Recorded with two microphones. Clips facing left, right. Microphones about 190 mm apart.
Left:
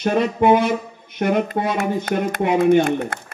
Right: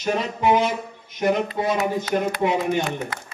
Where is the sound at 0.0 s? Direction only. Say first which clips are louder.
Left 5 dB; 60° left (ahead or behind).